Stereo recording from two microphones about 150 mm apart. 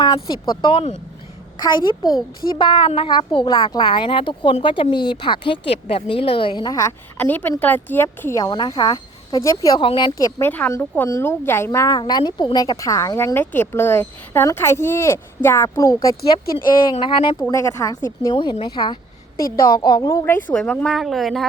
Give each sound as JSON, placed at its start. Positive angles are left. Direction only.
{"t": 0.0, "sound": "speech", "side_deg": 30}
{"t": 9.8, "sound": "speech", "side_deg": 35}
{"t": 10.2, "sound": "a woman's voice", "side_deg": 25}
{"t": 16.9, "sound": "speech", "side_deg": 35}
{"t": 17.5, "sound": "speech", "side_deg": 20}
{"t": 20.5, "sound": "speech", "side_deg": 5}